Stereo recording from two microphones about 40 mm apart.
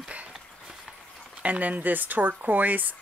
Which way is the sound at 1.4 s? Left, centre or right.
Right.